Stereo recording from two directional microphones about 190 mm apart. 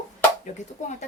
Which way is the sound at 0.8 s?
40° left (ahead or behind).